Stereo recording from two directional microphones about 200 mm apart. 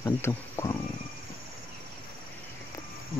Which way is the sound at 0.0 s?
15° left (ahead or behind).